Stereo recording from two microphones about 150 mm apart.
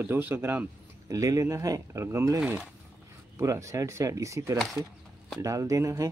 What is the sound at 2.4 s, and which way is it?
Speech, 10° right (ahead or behind).